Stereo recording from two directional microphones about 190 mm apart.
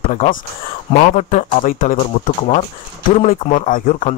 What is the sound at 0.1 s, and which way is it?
Speech, 35° left (ahead or behind).